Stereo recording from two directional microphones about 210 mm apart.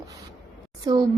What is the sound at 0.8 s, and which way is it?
Speech, 20° right (ahead or behind).